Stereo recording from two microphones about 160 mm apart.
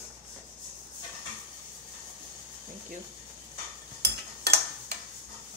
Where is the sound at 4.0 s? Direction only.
90° right.